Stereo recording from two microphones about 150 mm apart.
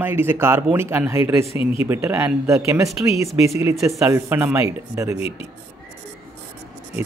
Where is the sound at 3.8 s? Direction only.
20° right (ahead or behind).